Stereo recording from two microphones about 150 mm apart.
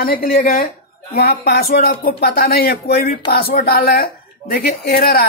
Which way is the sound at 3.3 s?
80° left.